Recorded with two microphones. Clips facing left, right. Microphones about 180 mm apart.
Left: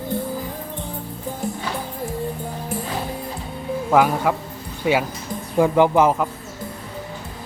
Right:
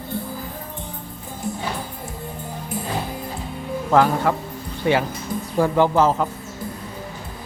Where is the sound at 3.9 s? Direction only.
10° left (ahead or behind).